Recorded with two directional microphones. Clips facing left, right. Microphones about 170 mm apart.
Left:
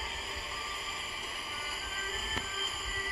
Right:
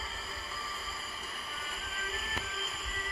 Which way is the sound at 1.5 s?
5° left (ahead or behind).